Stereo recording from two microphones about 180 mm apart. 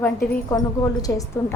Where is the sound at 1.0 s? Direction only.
20° left (ahead or behind).